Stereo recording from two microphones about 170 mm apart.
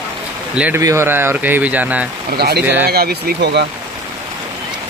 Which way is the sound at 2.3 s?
70° right (ahead or behind).